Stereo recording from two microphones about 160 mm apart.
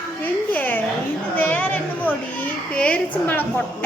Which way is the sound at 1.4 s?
10° left (ahead or behind).